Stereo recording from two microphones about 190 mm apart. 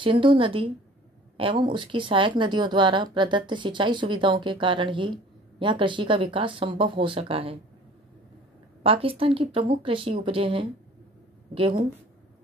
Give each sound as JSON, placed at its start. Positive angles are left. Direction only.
{"t": 0.0, "sound": "speech", "side_deg": -25}
{"t": 8.8, "sound": "speech", "side_deg": -30}